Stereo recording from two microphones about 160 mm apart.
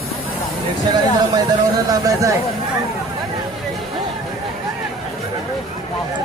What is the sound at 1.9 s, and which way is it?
Speech, 20° right (ahead or behind).